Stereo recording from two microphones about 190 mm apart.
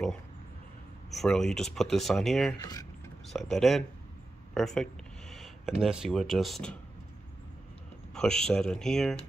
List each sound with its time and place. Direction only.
1.1 s speech: centre (ahead or behind)
2.6 s speech: 20° left (ahead or behind)
3.3 s speech: centre (ahead or behind)
8.1 s speech: 5° left (ahead or behind)